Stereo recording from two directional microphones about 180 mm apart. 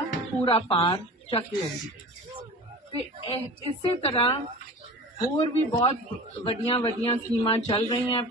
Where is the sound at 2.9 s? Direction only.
30° left (ahead or behind).